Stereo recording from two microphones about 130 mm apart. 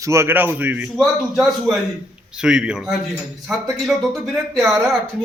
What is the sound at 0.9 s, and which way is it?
A man's voice, centre (ahead or behind).